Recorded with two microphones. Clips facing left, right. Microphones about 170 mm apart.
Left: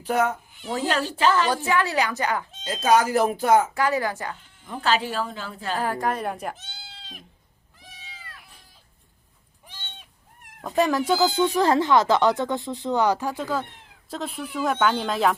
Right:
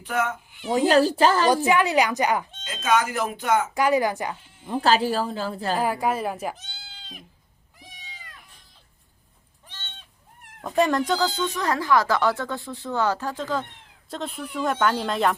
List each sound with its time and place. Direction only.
0.0 s speech: 35° left (ahead or behind)
0.9 s a woman's voice: 35° right (ahead or behind)
1.6 s a woman's voice: 15° right (ahead or behind)
2.6 s speech: 35° left (ahead or behind)
3.8 s a woman's voice: 15° right (ahead or behind)
4.6 s a woman's voice: 35° right (ahead or behind)
5.8 s speech: 10° right (ahead or behind)
9.6 s a sound: 10° left (ahead or behind)
10.6 s speech: centre (ahead or behind)
11.5 s speech: 30° left (ahead or behind); by 15.4 s centre (ahead or behind)